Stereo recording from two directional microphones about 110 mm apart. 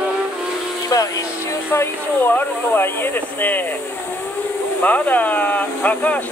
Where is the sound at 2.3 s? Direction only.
20° left (ahead or behind).